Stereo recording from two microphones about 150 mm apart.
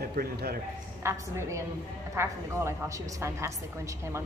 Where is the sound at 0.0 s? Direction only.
85° right.